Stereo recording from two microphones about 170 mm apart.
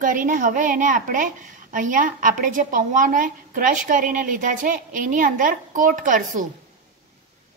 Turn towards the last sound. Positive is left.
turn(degrees=-50)  # may be behind; listen again after turning